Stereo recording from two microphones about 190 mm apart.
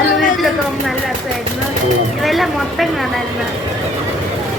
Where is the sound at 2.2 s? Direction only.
Centre (ahead or behind).